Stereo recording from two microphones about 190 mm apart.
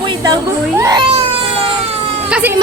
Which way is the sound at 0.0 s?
25° right (ahead or behind).